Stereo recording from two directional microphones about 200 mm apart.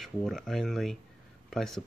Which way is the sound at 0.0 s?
Centre (ahead or behind).